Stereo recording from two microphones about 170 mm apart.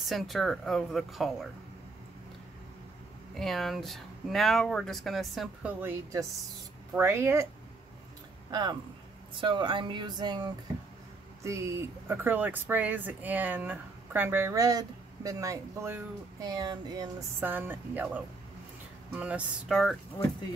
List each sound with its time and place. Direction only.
0.0 s speech: centre (ahead or behind)
3.3 s speech: centre (ahead or behind)
5.8 s speech: 10° right (ahead or behind)
8.5 s speech: 25° right (ahead or behind)
17.4 s speech: 10° right (ahead or behind)